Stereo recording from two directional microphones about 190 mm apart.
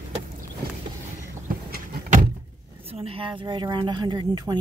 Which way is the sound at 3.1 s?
25° right (ahead or behind).